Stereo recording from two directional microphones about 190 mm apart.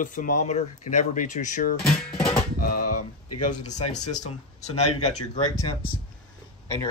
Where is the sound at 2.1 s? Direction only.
30° left (ahead or behind).